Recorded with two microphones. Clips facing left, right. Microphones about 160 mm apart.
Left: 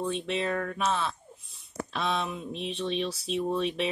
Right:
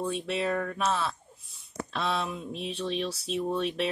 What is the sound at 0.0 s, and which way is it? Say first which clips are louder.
Speech: even; centre (ahead or behind).